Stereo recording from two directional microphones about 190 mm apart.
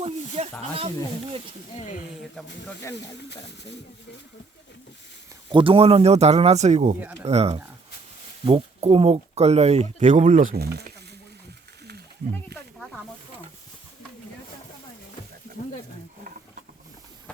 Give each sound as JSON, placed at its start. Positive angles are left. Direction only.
{"t": 0.0, "sound": "speech", "side_deg": -35}
{"t": 2.9, "sound": "speech", "side_deg": 65}
{"t": 5.5, "sound": "speech", "side_deg": -25}
{"t": 12.5, "sound": "a sound", "side_deg": -60}